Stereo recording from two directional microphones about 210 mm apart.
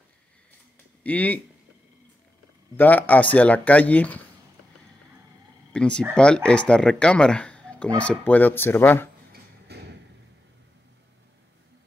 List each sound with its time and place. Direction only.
1.0 s speech: 5° left (ahead or behind)
2.8 s speech: 10° left (ahead or behind)
5.7 s speech: 5° left (ahead or behind)
9.3 s a sound: 50° right (ahead or behind)